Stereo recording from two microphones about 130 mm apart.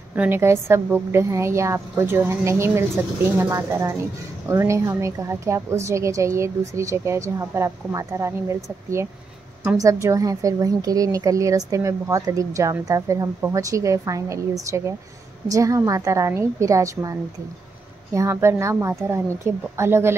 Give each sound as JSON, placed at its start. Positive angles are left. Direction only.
{"t": 0.1, "sound": "a woman's voice", "side_deg": -15}
{"t": 9.8, "sound": "a woman's voice", "side_deg": -25}